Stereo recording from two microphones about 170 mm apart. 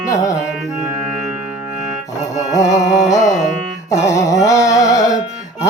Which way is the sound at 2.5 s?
20° left (ahead or behind).